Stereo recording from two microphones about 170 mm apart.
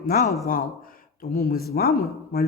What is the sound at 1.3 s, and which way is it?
A woman's voice, 65° left (ahead or behind).